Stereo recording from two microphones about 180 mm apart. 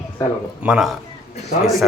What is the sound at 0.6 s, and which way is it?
Speech, 5° right (ahead or behind).